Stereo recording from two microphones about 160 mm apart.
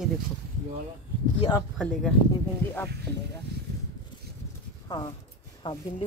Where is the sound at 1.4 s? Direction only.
25° left (ahead or behind).